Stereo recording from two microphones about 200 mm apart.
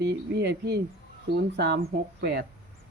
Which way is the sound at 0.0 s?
55° right (ahead or behind).